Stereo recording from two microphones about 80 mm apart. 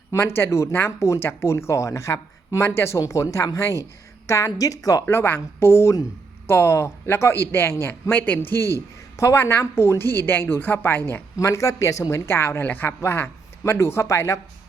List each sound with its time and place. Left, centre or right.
0.1 s a woman's voice: left
5.0 s speech: left
11.3 s speech: left